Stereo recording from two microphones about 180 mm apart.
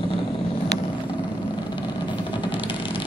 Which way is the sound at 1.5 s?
25° left (ahead or behind).